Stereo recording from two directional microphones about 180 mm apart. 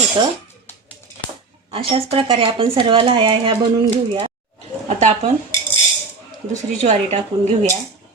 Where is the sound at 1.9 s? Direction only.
30° right (ahead or behind).